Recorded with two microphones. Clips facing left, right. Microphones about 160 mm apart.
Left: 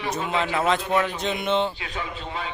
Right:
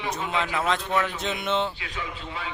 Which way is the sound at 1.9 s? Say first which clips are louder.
Left 3 dB; 35° left (ahead or behind).